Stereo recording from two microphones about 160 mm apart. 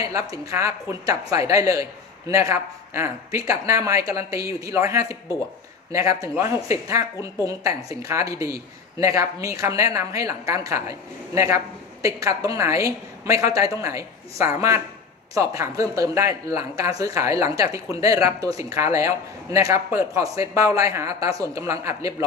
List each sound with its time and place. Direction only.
0.0 s speech: 20° right (ahead or behind)